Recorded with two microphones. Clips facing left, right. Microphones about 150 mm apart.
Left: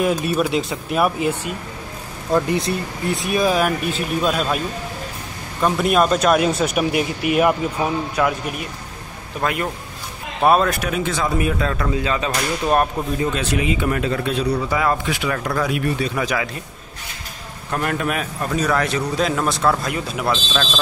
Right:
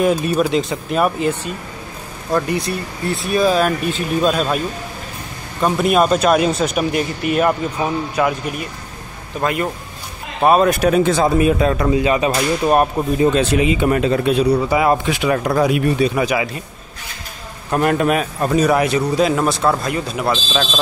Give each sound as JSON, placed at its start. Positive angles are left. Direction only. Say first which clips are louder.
{"t": 0.0, "sound": "speech", "louder": "right 3 dB", "side_deg": 5}
{"t": 2.3, "sound": "speech", "louder": "even", "side_deg": 25}
{"t": 5.6, "sound": "speech", "louder": "right 2 dB", "side_deg": 0}
{"t": 8.2, "sound": "speech", "louder": "right 2 dB", "side_deg": -5}
{"t": 9.4, "sound": "speech", "louder": "right 3 dB", "side_deg": 0}
{"t": 10.8, "sound": "speech", "louder": "right 8 dB", "side_deg": -35}
{"t": 13.2, "sound": "speech", "louder": "right 8 dB", "side_deg": -25}
{"t": 17.6, "sound": "a man's voice", "louder": "right 7 dB", "side_deg": -25}
{"t": 20.2, "sound": "a man's voice", "louder": "right 1 dB", "side_deg": -10}